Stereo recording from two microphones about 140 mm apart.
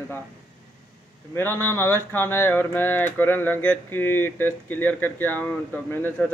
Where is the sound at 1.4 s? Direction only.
15° left (ahead or behind).